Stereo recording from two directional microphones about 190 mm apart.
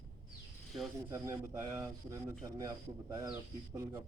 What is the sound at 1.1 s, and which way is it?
Speech, 15° right (ahead or behind).